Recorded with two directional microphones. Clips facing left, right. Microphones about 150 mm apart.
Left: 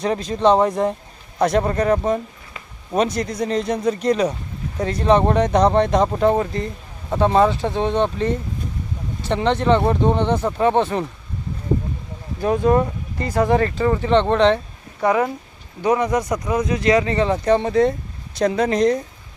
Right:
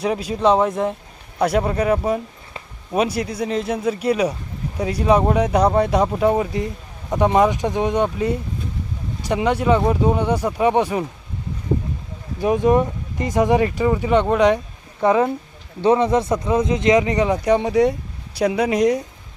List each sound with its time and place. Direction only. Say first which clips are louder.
0.0 s speech: left 1 dB; 10° right (ahead or behind)
12.4 s speech: right 1 dB; 15° right (ahead or behind)
15.0 s speech: right 2 dB; 25° right (ahead or behind)